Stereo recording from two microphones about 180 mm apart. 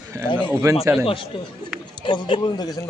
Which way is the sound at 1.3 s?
25° left (ahead or behind).